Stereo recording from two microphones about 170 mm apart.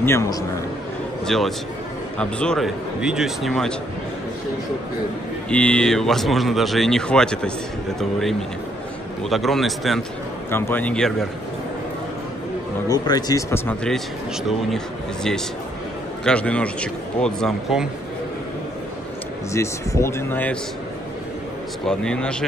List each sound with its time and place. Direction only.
0.0 s speech: 15° left (ahead or behind)
1.2 s speech: centre (ahead or behind)
5.5 s speech: 5° left (ahead or behind)
10.5 s speech: 10° left (ahead or behind)
12.8 s speech: 25° left (ahead or behind)
16.3 s speech: 5° left (ahead or behind)
19.5 s speech: 15° left (ahead or behind)
21.8 s speech: 5° left (ahead or behind)